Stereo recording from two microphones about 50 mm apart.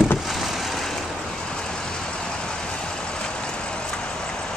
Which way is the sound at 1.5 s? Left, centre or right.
Centre.